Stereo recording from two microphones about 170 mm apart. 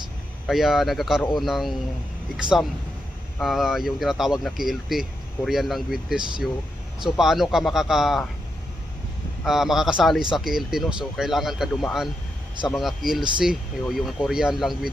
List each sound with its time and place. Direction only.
0.4 s speech: centre (ahead or behind)
9.4 s speech: centre (ahead or behind)